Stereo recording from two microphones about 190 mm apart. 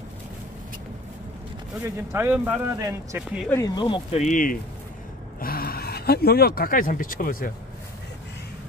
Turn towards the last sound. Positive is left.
turn(degrees=45)  # may be behind; listen again after turning